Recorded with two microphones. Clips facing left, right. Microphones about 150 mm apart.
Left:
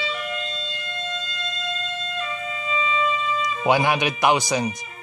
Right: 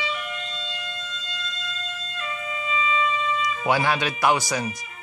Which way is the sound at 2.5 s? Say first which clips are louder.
Right 1 dB; 30° left (ahead or behind).